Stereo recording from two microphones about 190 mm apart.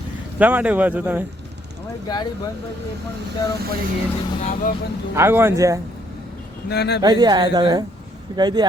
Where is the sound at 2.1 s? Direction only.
20° left (ahead or behind).